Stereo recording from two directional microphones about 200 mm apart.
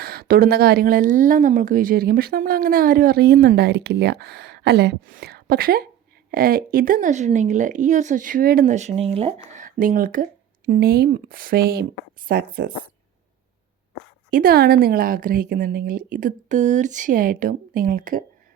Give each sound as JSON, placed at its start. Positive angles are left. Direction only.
{"t": 0.0, "sound": "speech", "side_deg": -50}
{"t": 9.6, "sound": "speech", "side_deg": -45}
{"t": 14.3, "sound": "speech", "side_deg": -45}